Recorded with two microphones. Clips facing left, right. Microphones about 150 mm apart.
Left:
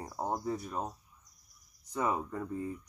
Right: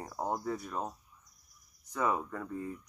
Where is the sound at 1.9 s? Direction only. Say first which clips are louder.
Even; 20° left (ahead or behind).